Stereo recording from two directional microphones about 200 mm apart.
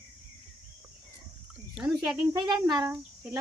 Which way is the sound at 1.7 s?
5° right (ahead or behind).